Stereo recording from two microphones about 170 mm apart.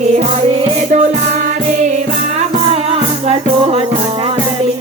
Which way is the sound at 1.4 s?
45° right (ahead or behind).